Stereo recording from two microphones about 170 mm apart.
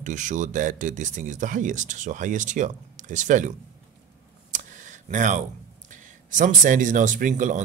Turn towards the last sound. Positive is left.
turn(degrees=-50)  # may be behind; listen again after turning